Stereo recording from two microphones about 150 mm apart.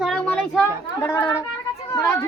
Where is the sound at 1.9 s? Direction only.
20° left (ahead or behind).